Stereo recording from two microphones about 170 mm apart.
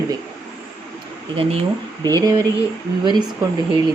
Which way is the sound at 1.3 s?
35° right (ahead or behind).